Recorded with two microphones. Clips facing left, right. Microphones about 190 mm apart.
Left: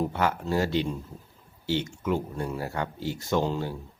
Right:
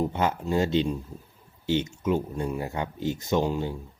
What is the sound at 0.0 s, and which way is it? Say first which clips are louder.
Speech: right 1 dB; 20° right (ahead or behind).